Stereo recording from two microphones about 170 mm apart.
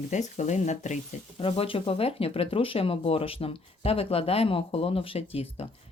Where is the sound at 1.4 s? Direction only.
35° left (ahead or behind).